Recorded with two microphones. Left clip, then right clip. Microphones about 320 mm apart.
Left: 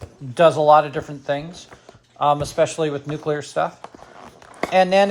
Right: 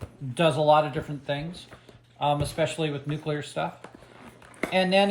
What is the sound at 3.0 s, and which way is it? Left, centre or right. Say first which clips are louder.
Speech: left 7 dB; left.